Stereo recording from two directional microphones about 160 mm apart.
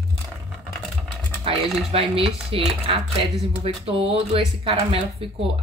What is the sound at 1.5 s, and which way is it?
Speech, 35° right (ahead or behind).